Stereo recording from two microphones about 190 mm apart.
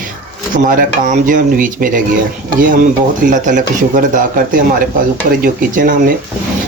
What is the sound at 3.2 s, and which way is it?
Speech, 45° right (ahead or behind).